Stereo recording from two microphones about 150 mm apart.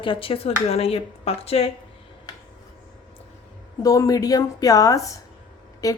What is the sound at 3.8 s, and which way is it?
A woman's voice, 25° left (ahead or behind).